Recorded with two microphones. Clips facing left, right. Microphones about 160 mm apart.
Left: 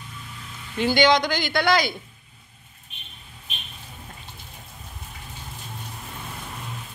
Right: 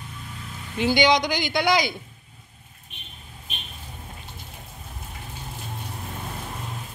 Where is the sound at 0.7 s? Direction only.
15° right (ahead or behind).